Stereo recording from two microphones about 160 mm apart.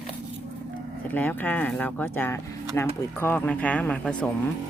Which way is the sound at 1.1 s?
10° left (ahead or behind).